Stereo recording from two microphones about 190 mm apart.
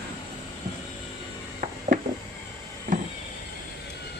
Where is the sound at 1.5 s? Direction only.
40° right (ahead or behind).